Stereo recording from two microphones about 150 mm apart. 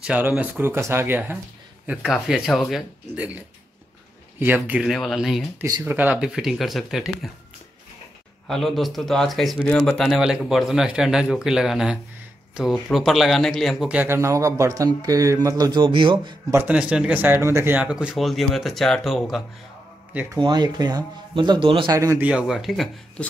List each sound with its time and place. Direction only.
0.0 s speech: 10° right (ahead or behind)
5.6 s speech: 25° right (ahead or behind)
5.9 s speech: 10° right (ahead or behind)
8.5 s speech: centre (ahead or behind); by 16.3 s 35° right (ahead or behind)
16.4 s speech: 10° right (ahead or behind)
20.3 s speech: 30° right (ahead or behind)
21.9 s speech: 20° right (ahead or behind)
22.2 s speech: 5° right (ahead or behind)